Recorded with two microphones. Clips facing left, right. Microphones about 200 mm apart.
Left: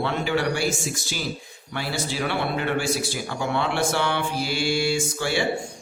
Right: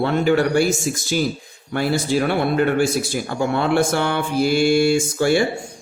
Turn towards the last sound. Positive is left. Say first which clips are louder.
# right 8 dB
turn(degrees=-50)  # may be behind; listen again after turning